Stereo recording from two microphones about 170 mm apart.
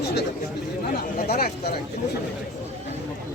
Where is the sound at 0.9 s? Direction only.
65° left (ahead or behind).